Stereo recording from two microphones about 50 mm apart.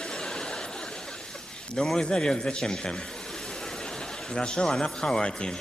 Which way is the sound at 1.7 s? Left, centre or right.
Centre.